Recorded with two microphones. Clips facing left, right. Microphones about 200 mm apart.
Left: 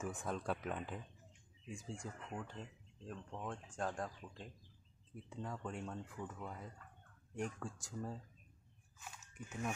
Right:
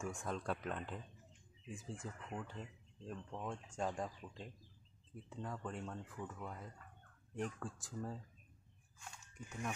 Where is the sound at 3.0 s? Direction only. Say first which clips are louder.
Right 1 dB; 10° right (ahead or behind).